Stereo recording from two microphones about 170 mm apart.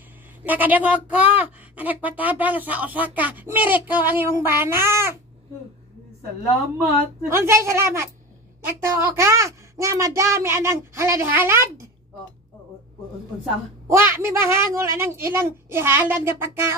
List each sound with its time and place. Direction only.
0.4 s speech: 10° right (ahead or behind)
7.2 s speech: 15° right (ahead or behind)
13.8 s speech: 15° right (ahead or behind)